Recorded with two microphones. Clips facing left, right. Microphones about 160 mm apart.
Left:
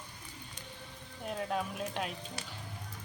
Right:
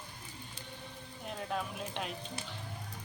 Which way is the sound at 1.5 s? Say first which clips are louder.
Even; centre (ahead or behind).